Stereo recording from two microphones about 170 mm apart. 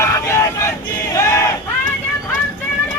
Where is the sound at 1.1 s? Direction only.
15° left (ahead or behind).